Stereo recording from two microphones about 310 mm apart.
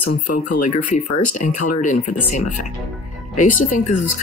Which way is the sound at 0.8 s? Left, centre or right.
Left.